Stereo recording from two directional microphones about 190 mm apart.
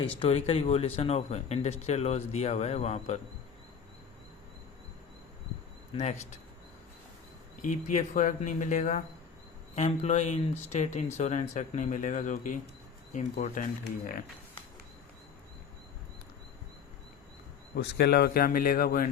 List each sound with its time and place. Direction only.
0.0 s speech: 30° left (ahead or behind)
5.9 s speech: 35° left (ahead or behind)
7.6 s a man's voice: 40° left (ahead or behind)
17.7 s a man's voice: 60° left (ahead or behind)